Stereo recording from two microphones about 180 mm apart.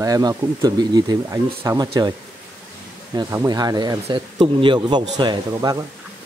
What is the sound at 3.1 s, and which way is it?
Speech, 20° right (ahead or behind).